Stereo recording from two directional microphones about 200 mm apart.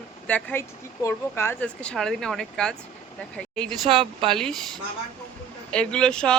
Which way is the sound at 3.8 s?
25° right (ahead or behind).